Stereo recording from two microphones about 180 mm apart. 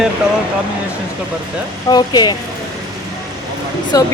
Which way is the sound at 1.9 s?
20° left (ahead or behind).